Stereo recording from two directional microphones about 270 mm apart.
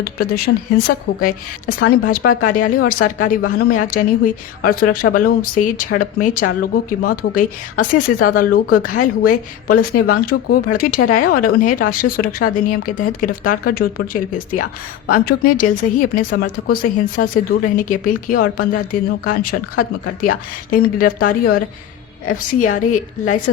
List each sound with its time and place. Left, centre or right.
0.0 s a woman's voice: left